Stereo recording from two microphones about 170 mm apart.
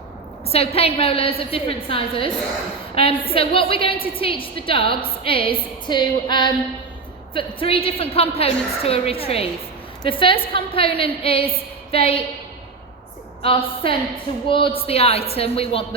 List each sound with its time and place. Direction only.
0.5 s a woman's voice: 35° left (ahead or behind)
13.4 s a woman's voice: 30° left (ahead or behind)